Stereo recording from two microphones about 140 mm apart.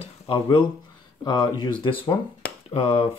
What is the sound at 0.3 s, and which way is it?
Speech, 35° left (ahead or behind).